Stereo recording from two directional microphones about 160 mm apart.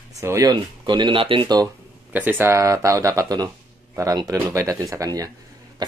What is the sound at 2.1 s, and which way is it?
A man's voice, 10° right (ahead or behind).